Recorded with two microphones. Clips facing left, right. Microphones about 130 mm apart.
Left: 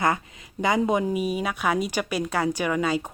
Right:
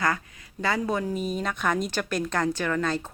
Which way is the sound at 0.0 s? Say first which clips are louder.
Left 3 dB; 20° left (ahead or behind).